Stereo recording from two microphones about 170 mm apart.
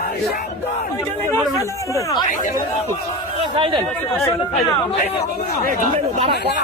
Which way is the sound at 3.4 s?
35° right (ahead or behind).